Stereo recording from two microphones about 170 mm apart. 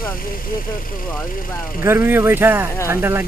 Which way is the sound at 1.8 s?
10° right (ahead or behind).